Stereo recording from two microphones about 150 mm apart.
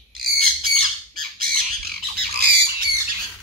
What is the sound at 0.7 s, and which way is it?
Squawk, 75° right (ahead or behind).